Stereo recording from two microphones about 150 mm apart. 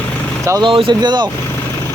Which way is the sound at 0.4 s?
20° right (ahead or behind).